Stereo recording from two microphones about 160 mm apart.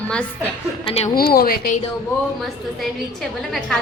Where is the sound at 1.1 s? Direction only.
70° left (ahead or behind).